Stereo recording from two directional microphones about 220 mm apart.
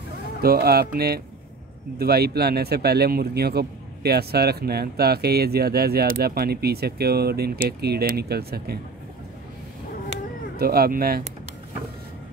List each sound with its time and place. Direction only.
0.4 s speech: 45° right (ahead or behind)
10.6 s speech: 45° right (ahead or behind)